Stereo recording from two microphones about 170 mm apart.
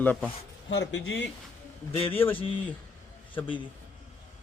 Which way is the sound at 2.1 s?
10° left (ahead or behind).